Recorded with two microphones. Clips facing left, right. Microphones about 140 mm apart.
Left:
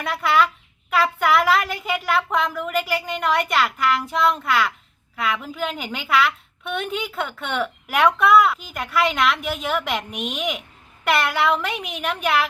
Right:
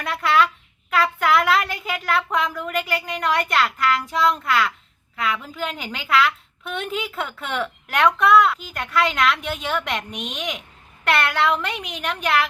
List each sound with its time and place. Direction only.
0.0 s a woman's voice: centre (ahead or behind)